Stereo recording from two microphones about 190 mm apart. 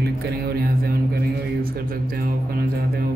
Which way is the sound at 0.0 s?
55° right (ahead or behind).